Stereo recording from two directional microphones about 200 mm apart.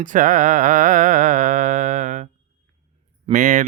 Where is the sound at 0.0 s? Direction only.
40° right (ahead or behind).